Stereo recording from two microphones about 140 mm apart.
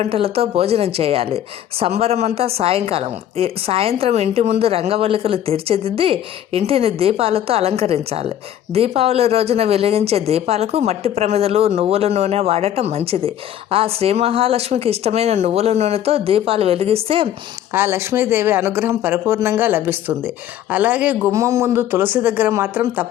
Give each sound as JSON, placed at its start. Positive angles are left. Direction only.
{"t": 0.0, "sound": "speech", "side_deg": -45}
{"t": 17.7, "sound": "speech", "side_deg": -15}